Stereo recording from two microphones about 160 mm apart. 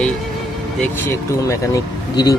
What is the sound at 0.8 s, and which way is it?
Speech, 15° left (ahead or behind).